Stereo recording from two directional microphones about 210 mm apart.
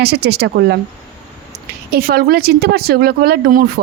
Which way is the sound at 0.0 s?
50° right (ahead or behind).